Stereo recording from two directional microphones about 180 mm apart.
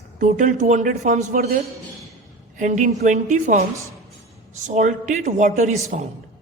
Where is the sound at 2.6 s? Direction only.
45° right (ahead or behind).